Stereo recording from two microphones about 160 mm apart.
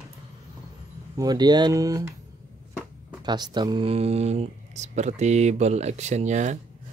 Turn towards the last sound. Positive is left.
turn(degrees=-45)  # may be behind; listen again after turning